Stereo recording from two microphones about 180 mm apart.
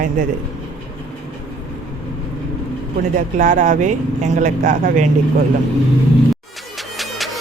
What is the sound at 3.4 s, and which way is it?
A man's voice, 45° right (ahead or behind).